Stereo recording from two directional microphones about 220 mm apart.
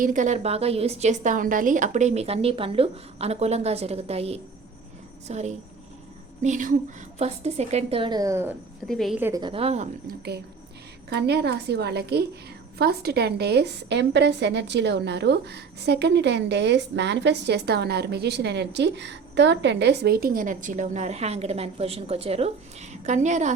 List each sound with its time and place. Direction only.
0.0 s a woman's voice: 35° right (ahead or behind); by 8.5 s 10° right (ahead or behind)
8.9 s a woman's voice: centre (ahead or behind)
9.4 s a woman's voice: 25° right (ahead or behind)
11.1 s a woman's voice: 50° right (ahead or behind); by 23.5 s 35° right (ahead or behind)